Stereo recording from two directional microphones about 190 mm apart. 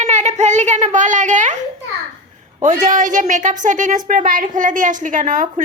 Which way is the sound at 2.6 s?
45° right (ahead or behind).